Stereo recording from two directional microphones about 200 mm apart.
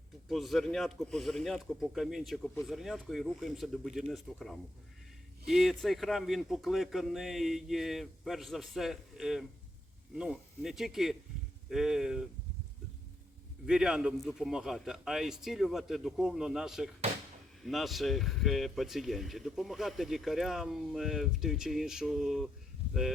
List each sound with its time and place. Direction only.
0.3 s speech: centre (ahead or behind)
13.7 s speech: 5° right (ahead or behind)